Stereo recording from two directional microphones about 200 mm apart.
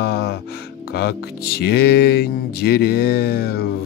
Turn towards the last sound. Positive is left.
turn(degrees=50)  # may be behind; listen again after turning